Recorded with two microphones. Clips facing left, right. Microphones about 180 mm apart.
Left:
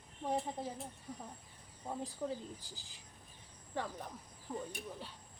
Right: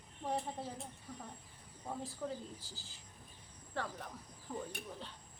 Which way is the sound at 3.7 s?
15° left (ahead or behind).